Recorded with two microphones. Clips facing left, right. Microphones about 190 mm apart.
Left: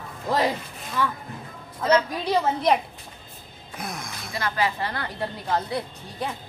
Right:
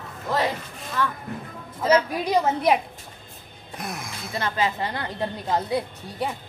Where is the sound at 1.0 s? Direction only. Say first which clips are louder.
Even; 10° left (ahead or behind).